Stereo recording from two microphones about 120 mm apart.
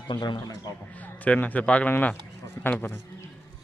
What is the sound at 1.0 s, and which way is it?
A man's voice, 10° left (ahead or behind).